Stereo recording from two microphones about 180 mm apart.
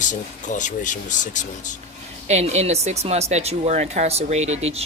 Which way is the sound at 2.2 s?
40° right (ahead or behind).